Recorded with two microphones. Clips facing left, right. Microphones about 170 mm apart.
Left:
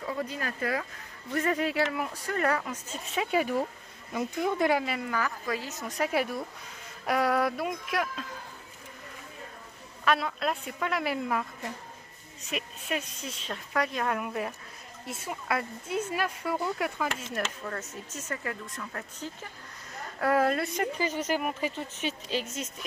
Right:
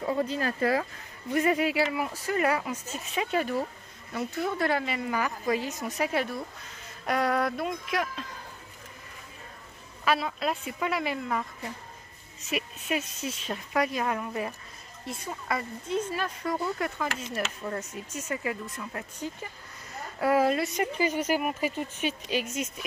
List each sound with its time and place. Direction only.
0.0 s speech: 30° right (ahead or behind)
1.3 s speech: 10° right (ahead or behind)
3.2 s speech: 5° left (ahead or behind)
4.8 s a woman's voice: centre (ahead or behind)
5.1 s speech: 20° right (ahead or behind)
5.9 s a woman's voice: centre (ahead or behind)
10.0 s a woman's voice: 5° right (ahead or behind)
17.1 s a woman's voice: 5° right (ahead or behind)